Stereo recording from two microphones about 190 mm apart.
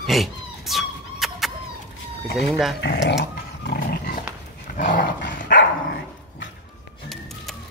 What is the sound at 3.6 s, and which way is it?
Dog, 55° left (ahead or behind).